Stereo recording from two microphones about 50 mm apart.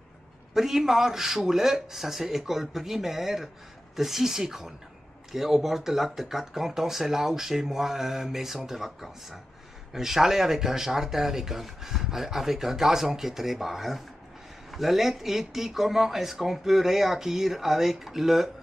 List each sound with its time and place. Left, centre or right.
0.6 s speech: centre